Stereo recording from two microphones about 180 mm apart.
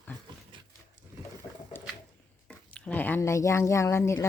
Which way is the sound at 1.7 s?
10° left (ahead or behind).